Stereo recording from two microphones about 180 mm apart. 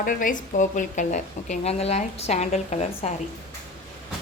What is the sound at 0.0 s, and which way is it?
A woman's voice, 50° left (ahead or behind).